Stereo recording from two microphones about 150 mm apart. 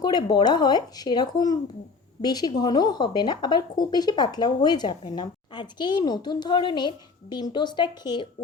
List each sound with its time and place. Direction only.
0.0 s speech: 30° left (ahead or behind)